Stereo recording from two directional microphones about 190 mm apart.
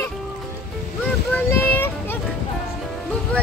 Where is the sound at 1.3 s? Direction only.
10° left (ahead or behind).